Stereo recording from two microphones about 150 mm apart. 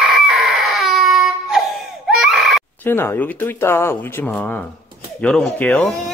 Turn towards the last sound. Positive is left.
turn(degrees=10)  # may be behind; listen again after turning